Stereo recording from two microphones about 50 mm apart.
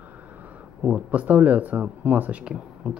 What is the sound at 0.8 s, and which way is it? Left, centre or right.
Speech, right.